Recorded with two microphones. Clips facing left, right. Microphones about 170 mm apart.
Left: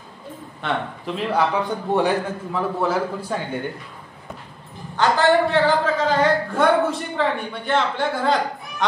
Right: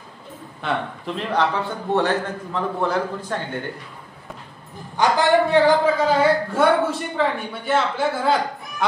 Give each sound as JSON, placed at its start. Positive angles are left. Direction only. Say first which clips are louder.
{"t": 0.6, "sound": "a man's voice", "louder": "even", "side_deg": 0}
{"t": 4.9, "sound": "a man's voice", "louder": "even", "side_deg": -15}